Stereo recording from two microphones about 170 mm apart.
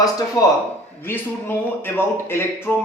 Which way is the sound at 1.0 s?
15° left (ahead or behind).